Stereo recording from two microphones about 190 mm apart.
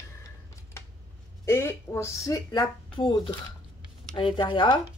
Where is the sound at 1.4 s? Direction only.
15° left (ahead or behind).